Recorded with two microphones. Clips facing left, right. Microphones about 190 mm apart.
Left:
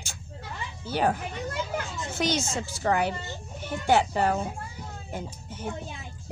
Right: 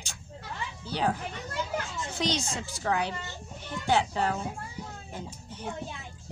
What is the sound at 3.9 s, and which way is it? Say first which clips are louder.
Speech: left 4 dB; 10° left (ahead or behind).